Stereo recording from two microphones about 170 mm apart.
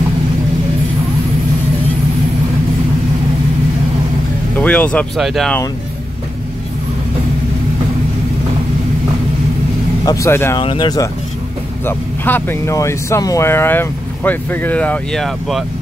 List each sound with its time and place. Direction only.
4.6 s speech: 5° left (ahead or behind)
10.0 s speech: 20° left (ahead or behind)
10.6 s speech: 30° left (ahead or behind)
11.8 s speech: 10° left (ahead or behind)